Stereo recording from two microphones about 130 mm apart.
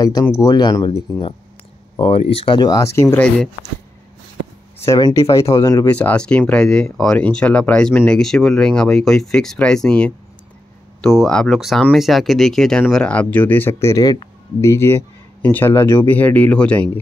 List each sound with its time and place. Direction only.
0.0 s speech: 30° left (ahead or behind)
2.0 s speech: 45° left (ahead or behind); by 3.2 s 20° left (ahead or behind)
4.8 s speech: 25° left (ahead or behind)
5.9 s speech: 10° left (ahead or behind)